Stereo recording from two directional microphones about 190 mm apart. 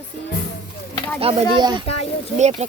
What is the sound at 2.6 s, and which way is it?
Speech, 35° right (ahead or behind).